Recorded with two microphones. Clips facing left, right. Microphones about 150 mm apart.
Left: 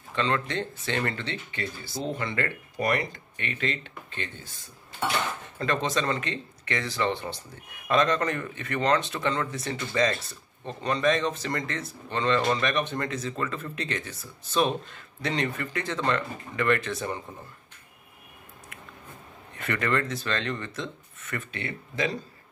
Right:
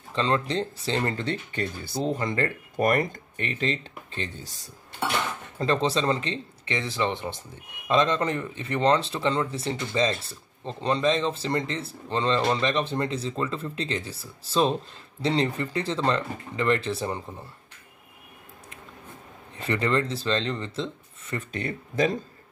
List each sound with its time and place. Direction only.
0.1 s speech: 30° right (ahead or behind)
1.2 s speech: 45° right (ahead or behind)
5.6 s speech: 30° right (ahead or behind)
19.5 s speech: 30° right (ahead or behind)
21.5 s speech: 40° right (ahead or behind)